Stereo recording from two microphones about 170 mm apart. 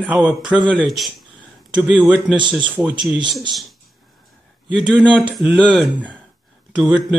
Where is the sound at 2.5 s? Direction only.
Centre (ahead or behind).